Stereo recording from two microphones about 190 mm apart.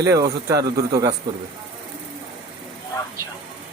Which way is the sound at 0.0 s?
15° right (ahead or behind).